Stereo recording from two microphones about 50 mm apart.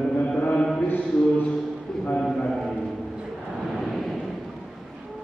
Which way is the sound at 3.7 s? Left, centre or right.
Centre.